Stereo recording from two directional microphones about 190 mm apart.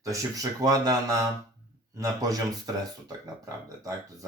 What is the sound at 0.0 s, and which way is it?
Speech, 20° right (ahead or behind).